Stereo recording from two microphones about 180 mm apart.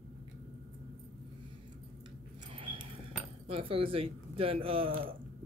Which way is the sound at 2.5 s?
30° right (ahead or behind).